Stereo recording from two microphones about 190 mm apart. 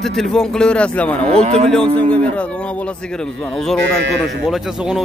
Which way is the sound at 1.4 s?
35° right (ahead or behind).